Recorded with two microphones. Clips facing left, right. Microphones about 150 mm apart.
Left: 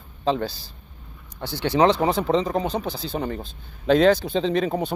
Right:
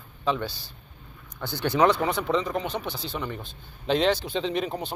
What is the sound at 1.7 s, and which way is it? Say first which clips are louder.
Speech: left 3 dB; 25° left (ahead or behind).